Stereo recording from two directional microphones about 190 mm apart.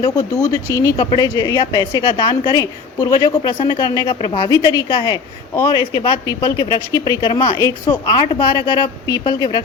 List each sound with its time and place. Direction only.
0.0 s speech: 20° left (ahead or behind)